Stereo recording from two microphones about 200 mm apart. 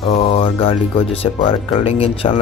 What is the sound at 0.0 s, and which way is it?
Speech, 30° left (ahead or behind).